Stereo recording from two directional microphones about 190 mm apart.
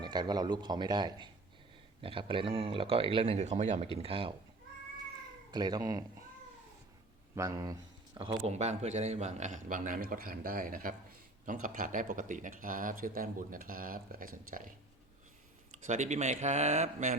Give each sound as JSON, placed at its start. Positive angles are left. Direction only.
{"t": 0.0, "sound": "speech", "side_deg": -20}
{"t": 5.5, "sound": "speech", "side_deg": -20}
{"t": 7.3, "sound": "speech", "side_deg": -15}
{"t": 8.4, "sound": "speech", "side_deg": -35}
{"t": 15.9, "sound": "speech", "side_deg": -40}